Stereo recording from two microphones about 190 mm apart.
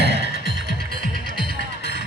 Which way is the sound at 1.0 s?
45° right (ahead or behind).